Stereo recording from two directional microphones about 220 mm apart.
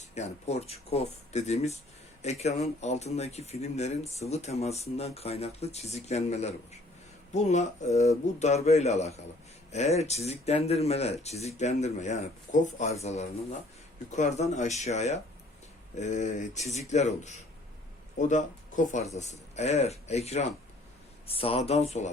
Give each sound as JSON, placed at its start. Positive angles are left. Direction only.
{"t": 0.0, "sound": "speech", "side_deg": 30}